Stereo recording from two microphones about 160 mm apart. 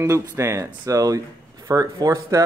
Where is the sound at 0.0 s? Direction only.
15° right (ahead or behind).